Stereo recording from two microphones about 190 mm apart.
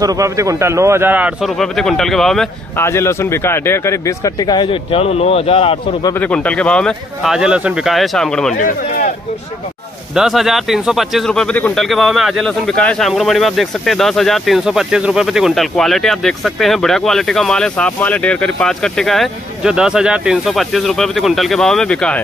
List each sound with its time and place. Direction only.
0.0 s a man's voice: 15° right (ahead or behind); by 2.5 s centre (ahead or behind)
2.8 s speech: 15° left (ahead or behind); by 6.1 s 30° left (ahead or behind)
6.1 s speech: 10° left (ahead or behind)
8.5 s speech: 45° left (ahead or behind)
10.1 s speech: centre (ahead or behind)